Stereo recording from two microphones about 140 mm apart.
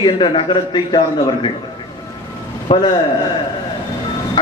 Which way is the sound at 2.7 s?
30° left (ahead or behind).